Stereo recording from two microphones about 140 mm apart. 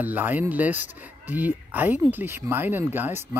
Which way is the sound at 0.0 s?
10° right (ahead or behind).